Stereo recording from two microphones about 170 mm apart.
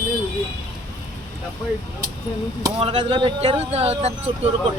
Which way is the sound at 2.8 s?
35° right (ahead or behind).